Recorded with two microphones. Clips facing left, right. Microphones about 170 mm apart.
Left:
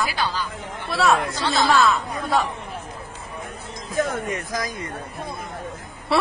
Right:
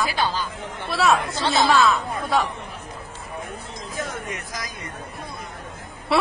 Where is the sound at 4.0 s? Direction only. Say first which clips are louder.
Left 8 dB; 50° left (ahead or behind).